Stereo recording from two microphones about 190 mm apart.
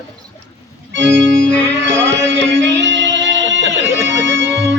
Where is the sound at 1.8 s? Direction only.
75° right (ahead or behind).